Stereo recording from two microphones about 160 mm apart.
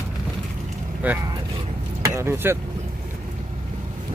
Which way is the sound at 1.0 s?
10° right (ahead or behind).